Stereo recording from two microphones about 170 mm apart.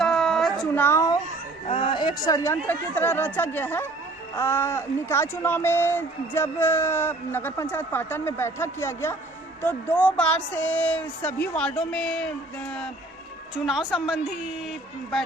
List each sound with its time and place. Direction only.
0.0 s a sound: centre (ahead or behind)
0.8 s speech: 15° left (ahead or behind)
1.6 s a woman's voice: 35° left (ahead or behind); by 12.3 s 5° left (ahead or behind)
13.7 s a woman's voice: 5° right (ahead or behind)